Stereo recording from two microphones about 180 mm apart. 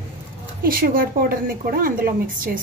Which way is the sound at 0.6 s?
55° right (ahead or behind).